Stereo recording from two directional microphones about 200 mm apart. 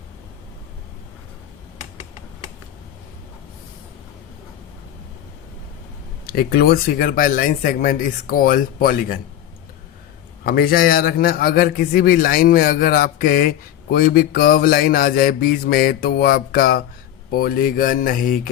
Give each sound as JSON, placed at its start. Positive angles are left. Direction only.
{"t": 6.2, "sound": "a man's voice", "side_deg": 50}
{"t": 10.4, "sound": "a man's voice", "side_deg": 50}